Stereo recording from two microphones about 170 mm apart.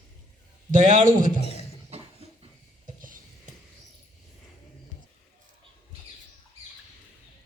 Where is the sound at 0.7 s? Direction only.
50° right (ahead or behind).